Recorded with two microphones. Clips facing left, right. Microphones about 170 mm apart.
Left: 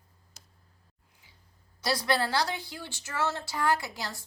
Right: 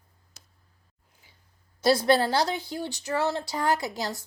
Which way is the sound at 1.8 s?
25° right (ahead or behind).